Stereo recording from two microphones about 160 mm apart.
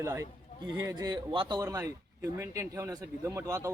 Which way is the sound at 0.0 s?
20° right (ahead or behind).